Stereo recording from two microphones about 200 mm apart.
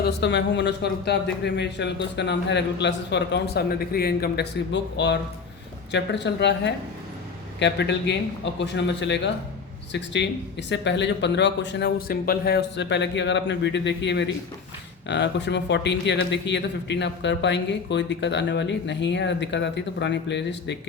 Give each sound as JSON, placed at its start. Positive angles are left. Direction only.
{"t": 0.0, "sound": "speech", "side_deg": 60}